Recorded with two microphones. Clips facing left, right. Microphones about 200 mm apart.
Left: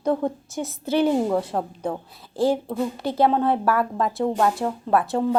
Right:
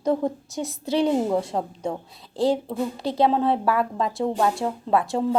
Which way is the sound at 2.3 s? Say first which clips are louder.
Left 1 dB; centre (ahead or behind).